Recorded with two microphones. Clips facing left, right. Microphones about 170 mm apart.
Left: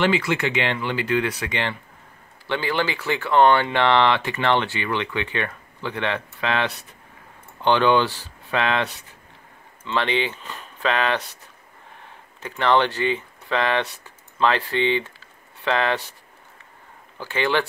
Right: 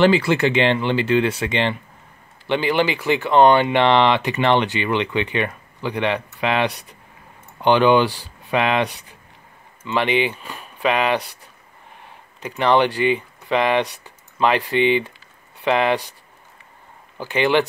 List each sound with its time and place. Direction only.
0.0 s speech: 35° right (ahead or behind); by 11.3 s 15° right (ahead or behind)
12.4 s speech: 15° right (ahead or behind)
17.2 s speech: 15° right (ahead or behind)